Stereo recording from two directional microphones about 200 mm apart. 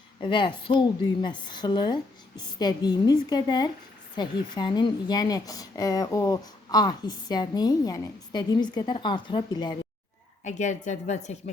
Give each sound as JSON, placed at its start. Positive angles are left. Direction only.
{"t": 0.2, "sound": "a woman's voice", "side_deg": 25}
{"t": 10.4, "sound": "a woman's voice", "side_deg": 35}